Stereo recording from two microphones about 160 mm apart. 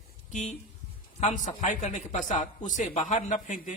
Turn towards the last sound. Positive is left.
turn(degrees=50)  # may be behind; listen again after turning